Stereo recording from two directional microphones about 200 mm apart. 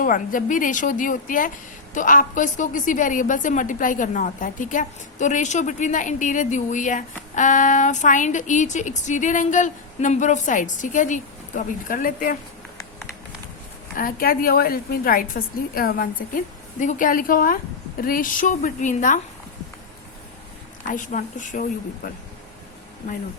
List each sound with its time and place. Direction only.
0.0 s a woman's voice: 40° left (ahead or behind)
13.9 s a woman's voice: 45° left (ahead or behind)
20.8 s a woman's voice: 40° left (ahead or behind)